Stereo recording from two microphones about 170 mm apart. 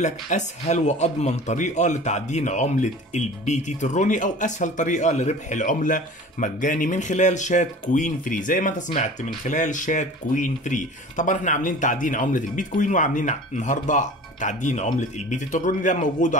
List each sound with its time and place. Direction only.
0.0 s speech: 45° left (ahead or behind)